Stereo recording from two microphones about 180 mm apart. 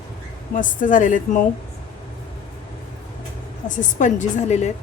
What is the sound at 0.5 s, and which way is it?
Speech, 45° left (ahead or behind).